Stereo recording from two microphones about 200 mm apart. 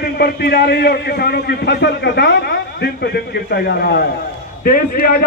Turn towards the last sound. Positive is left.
turn(degrees=50)  # may be behind; listen again after turning